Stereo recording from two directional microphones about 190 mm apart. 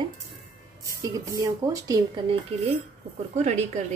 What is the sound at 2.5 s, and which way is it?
A woman's voice, 30° right (ahead or behind).